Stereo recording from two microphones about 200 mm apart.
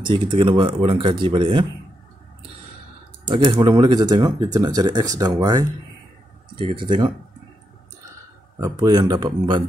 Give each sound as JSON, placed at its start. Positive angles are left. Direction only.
{"t": 0.0, "sound": "speech", "side_deg": -25}
{"t": 3.3, "sound": "speech", "side_deg": -25}
{"t": 8.5, "sound": "speech", "side_deg": -15}